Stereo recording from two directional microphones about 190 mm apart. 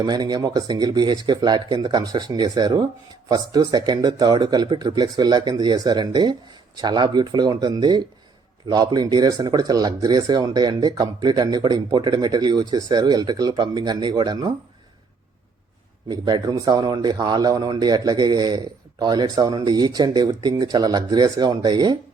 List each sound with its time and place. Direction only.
0.0 s a man's voice: 20° right (ahead or behind)
16.0 s a man's voice: 20° right (ahead or behind)